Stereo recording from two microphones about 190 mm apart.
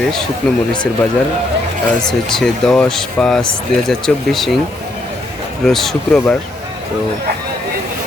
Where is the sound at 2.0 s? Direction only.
Centre (ahead or behind).